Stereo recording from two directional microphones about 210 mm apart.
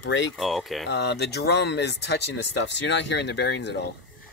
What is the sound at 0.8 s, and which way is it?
Speech, 55° left (ahead or behind).